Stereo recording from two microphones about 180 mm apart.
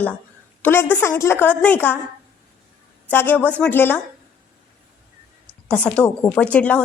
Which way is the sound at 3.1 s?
10° left (ahead or behind).